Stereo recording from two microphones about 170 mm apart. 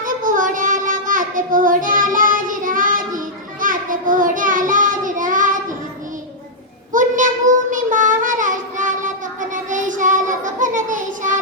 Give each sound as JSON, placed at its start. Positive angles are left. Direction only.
{"t": 0.0, "sound": "child singing", "side_deg": -50}
{"t": 6.9, "sound": "child singing", "side_deg": -50}